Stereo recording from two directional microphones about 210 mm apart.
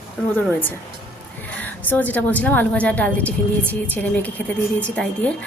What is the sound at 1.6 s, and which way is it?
A woman's voice, 10° left (ahead or behind).